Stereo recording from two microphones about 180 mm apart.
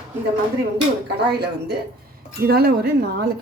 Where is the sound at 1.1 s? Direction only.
65° right (ahead or behind).